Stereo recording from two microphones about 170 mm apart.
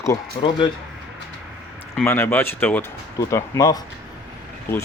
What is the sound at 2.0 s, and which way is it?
Speech, 10° left (ahead or behind).